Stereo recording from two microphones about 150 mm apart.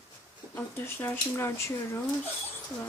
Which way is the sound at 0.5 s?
15° left (ahead or behind).